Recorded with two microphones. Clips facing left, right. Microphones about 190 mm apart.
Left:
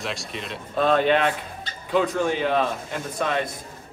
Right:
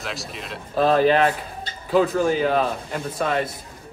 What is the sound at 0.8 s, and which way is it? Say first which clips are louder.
Speech: right 3 dB; 35° right (ahead or behind).